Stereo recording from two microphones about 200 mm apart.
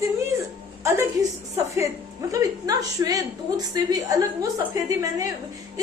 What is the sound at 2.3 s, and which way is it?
A woman's voice, 15° right (ahead or behind).